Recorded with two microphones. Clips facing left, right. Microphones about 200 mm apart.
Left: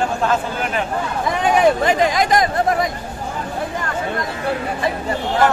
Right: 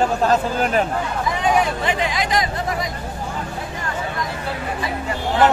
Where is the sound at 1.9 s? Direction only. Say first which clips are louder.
Left 6 dB; 45° left (ahead or behind).